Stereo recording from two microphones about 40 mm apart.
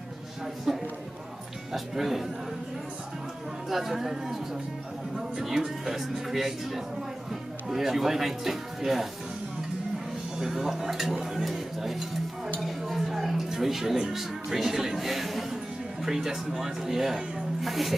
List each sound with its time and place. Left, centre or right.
0.7 s speech: centre
3.6 s speech: centre
10.4 s a woman's voice: centre